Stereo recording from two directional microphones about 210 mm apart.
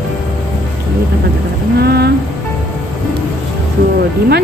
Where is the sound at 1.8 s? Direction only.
50° right (ahead or behind).